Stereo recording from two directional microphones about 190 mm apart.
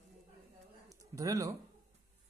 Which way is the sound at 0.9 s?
20° right (ahead or behind).